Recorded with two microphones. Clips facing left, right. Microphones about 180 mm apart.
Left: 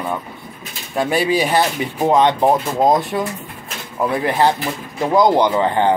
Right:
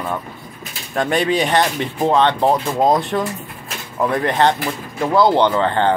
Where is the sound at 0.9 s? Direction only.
5° left (ahead or behind).